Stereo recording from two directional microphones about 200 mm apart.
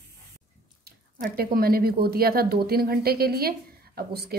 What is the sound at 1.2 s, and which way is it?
A woman's voice, 50° right (ahead or behind).